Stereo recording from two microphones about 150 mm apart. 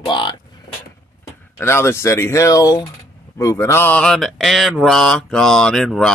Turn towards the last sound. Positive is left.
turn(degrees=0)  # may be behind; listen again after turning